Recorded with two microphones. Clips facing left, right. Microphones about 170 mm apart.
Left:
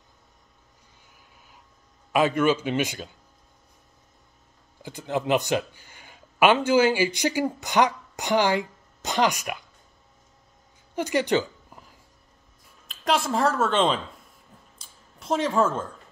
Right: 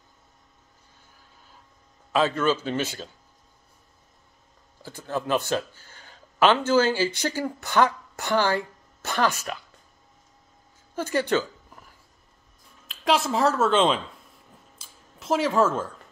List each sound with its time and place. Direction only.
2.1 s a man's voice: 15° left (ahead or behind)
4.8 s speech: 15° left (ahead or behind)
11.0 s speech: 15° left (ahead or behind)
12.8 s a woman's voice: centre (ahead or behind)
14.8 s a sound: 5° right (ahead or behind)